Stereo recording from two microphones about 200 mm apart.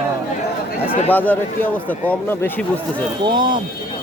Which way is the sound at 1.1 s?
10° left (ahead or behind).